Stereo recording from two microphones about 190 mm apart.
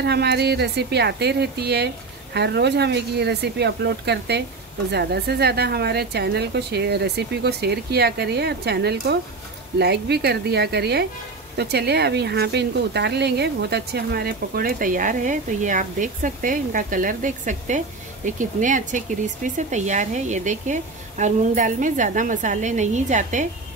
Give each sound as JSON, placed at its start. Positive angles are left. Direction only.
{"t": 0.0, "sound": "a woman's voice", "side_deg": -60}